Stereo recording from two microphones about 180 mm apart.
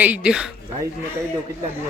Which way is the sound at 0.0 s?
5° right (ahead or behind).